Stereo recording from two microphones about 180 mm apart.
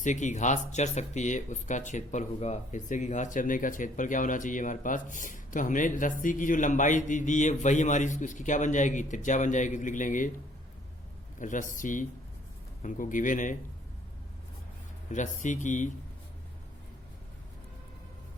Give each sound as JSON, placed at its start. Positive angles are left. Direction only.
{"t": 0.0, "sound": "speech", "side_deg": 45}
{"t": 11.3, "sound": "speech", "side_deg": 45}
{"t": 15.1, "sound": "speech", "side_deg": 45}